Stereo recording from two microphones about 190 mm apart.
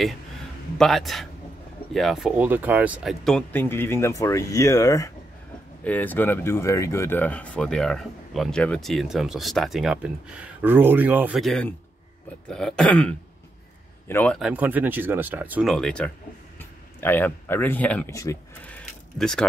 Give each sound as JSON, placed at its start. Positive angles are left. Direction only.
{"t": 0.7, "sound": "speech", "side_deg": 0}
{"t": 14.5, "sound": "speech", "side_deg": -10}
{"t": 15.6, "sound": "speech", "side_deg": 0}